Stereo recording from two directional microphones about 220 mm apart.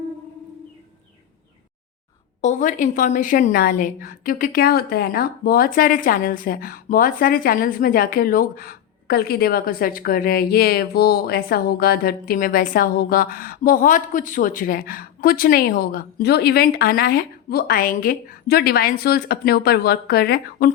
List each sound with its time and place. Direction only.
2.4 s a woman's voice: 35° left (ahead or behind)